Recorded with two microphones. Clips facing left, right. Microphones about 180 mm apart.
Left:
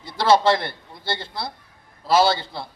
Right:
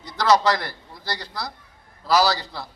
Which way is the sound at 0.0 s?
30° left (ahead or behind).